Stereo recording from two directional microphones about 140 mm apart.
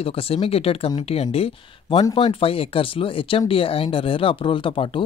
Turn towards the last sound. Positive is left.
turn(degrees=35)  # may be behind; listen again after turning